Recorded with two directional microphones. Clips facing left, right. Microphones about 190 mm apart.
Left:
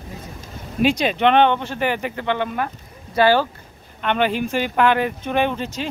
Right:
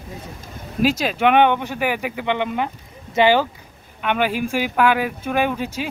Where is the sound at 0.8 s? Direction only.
5° right (ahead or behind).